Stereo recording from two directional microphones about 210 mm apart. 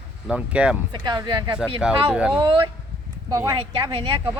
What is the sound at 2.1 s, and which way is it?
Speech, 5° right (ahead or behind).